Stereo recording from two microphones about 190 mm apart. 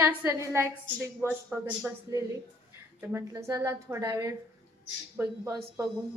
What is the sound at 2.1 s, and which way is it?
A woman's voice, 15° right (ahead or behind).